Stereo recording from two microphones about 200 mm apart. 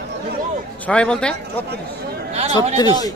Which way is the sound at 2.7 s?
20° left (ahead or behind).